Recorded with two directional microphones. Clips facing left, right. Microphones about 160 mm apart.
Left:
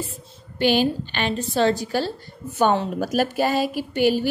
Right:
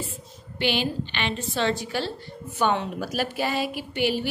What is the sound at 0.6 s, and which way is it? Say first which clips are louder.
A woman's voice: left 6 dB; 40° left (ahead or behind).